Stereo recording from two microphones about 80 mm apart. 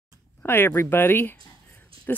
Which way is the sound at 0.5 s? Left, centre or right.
Left.